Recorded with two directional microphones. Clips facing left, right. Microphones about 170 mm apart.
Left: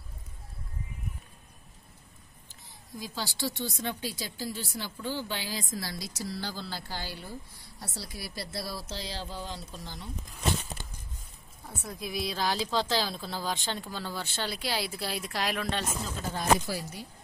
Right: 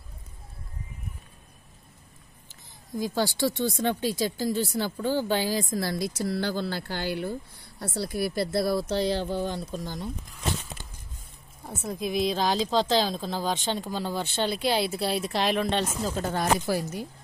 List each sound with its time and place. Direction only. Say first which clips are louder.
3.0 s speech: right 9 dB; 50° right (ahead or behind)
11.6 s speech: right 7 dB; 20° right (ahead or behind)
16.6 s speech: right 8 dB; 50° right (ahead or behind)